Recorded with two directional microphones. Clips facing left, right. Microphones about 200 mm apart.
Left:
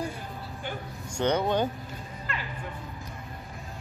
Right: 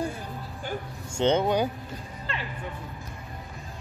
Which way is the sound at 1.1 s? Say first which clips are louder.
Right 3 dB; 25° right (ahead or behind).